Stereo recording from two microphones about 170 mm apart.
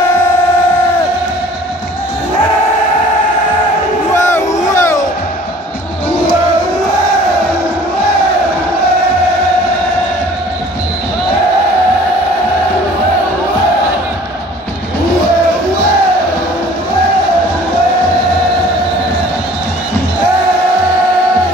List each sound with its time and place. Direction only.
4.1 s crowd: 15° left (ahead or behind)